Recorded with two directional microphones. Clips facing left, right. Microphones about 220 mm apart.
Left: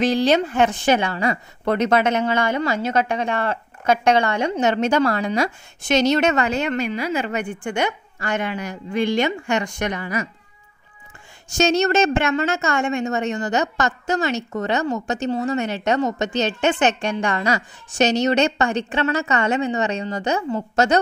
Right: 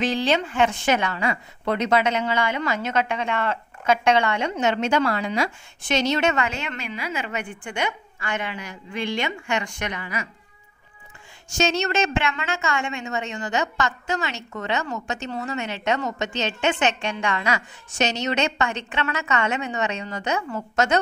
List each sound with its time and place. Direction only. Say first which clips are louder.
0.0 s speech: left 5 dB; 40° left (ahead or behind)
11.5 s speech: left 5 dB; 45° left (ahead or behind)